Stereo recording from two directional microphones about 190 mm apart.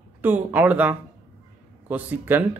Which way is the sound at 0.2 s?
10° right (ahead or behind).